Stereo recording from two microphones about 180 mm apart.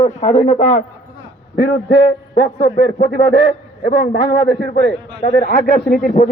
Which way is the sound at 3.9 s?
50° left (ahead or behind).